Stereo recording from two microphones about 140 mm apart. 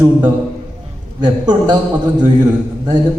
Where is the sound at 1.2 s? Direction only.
30° right (ahead or behind).